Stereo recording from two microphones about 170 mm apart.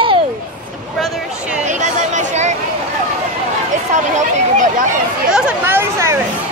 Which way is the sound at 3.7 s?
45° right (ahead or behind).